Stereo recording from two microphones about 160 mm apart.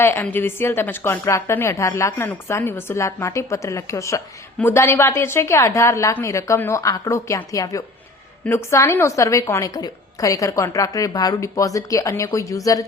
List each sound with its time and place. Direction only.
0.0 s a woman's voice: 15° left (ahead or behind)